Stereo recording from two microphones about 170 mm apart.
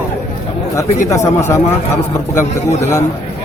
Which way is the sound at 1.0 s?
15° left (ahead or behind).